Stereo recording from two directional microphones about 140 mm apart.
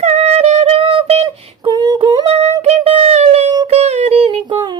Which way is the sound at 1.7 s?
25° right (ahead or behind).